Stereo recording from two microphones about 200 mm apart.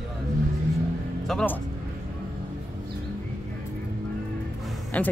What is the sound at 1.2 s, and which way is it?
Speech, 5° left (ahead or behind).